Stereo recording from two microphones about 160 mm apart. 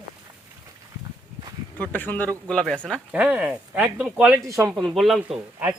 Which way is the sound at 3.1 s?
10° right (ahead or behind).